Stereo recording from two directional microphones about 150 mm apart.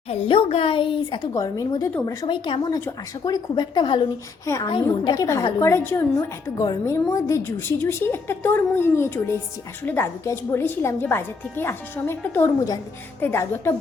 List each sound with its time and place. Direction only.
0.1 s a woman's voice: 40° left (ahead or behind)
1.3 s a woman's voice: 20° left (ahead or behind)
2.2 s a woman's voice: 30° left (ahead or behind)
4.4 s a woman's voice: 20° left (ahead or behind)